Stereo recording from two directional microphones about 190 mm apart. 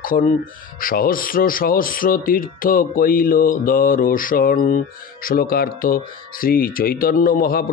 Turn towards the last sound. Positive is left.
turn(degrees=50)  # may be behind; listen again after turning